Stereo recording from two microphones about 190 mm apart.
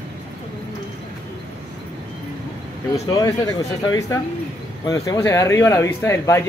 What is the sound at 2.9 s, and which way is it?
Speech, 20° left (ahead or behind).